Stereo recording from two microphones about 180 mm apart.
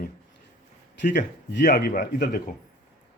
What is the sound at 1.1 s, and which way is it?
Speech, 50° left (ahead or behind).